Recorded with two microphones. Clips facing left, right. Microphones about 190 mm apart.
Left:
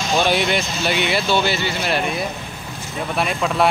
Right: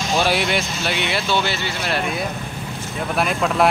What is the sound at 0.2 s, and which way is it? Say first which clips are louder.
Speech: left 1 dB; 5° right (ahead or behind).